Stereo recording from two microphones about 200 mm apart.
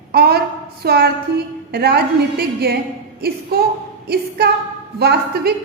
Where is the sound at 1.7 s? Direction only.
55° right (ahead or behind).